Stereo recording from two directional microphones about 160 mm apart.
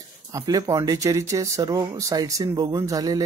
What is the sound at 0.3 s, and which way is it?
Speech, 20° right (ahead or behind).